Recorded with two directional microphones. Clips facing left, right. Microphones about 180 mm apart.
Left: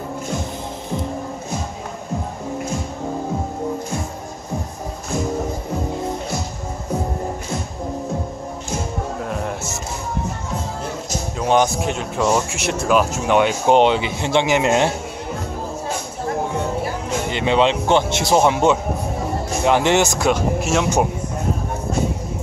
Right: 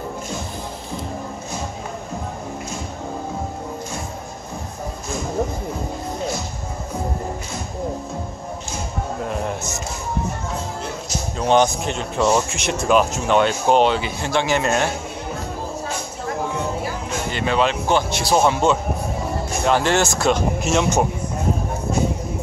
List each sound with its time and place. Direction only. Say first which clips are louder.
11.3 s speech: even; 10° left (ahead or behind)
17.3 s a man's voice: left 3 dB; 20° left (ahead or behind)